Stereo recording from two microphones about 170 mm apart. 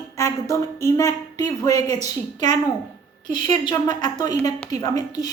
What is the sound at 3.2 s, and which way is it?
Speech, 45° right (ahead or behind).